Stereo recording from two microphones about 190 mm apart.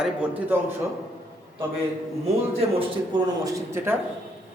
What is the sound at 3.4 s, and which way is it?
Speech, 15° right (ahead or behind).